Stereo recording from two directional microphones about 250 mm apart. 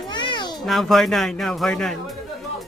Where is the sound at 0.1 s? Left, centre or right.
Centre.